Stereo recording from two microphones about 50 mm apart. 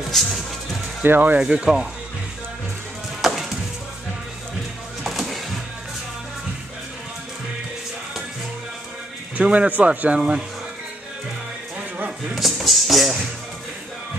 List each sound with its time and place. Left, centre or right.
0.1 s music: centre
1.0 s speech: right
1.4 s speech: centre
3.2 s music: centre
5.0 s music: centre
9.5 s speech: right
12.4 s speech: centre